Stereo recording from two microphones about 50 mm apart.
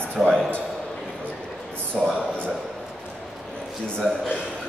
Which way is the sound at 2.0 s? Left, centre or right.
Centre.